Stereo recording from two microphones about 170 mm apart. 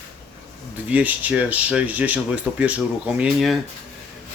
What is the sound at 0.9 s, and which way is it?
Speech, 10° right (ahead or behind).